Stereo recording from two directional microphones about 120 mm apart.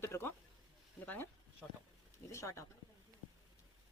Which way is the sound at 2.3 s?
25° left (ahead or behind).